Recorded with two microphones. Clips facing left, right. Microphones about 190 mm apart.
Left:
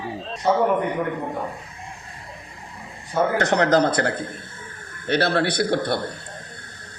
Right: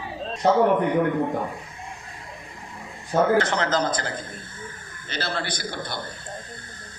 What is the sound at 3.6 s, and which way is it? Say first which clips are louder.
Speech: left 6 dB; 65° left (ahead or behind).